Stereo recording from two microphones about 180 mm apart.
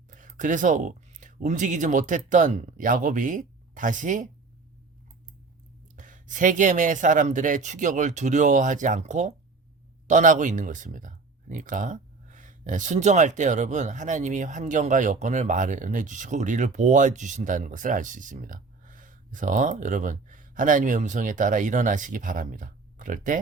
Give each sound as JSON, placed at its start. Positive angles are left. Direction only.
{"t": 0.1, "sound": "speech", "side_deg": -45}
{"t": 6.0, "sound": "speech", "side_deg": -45}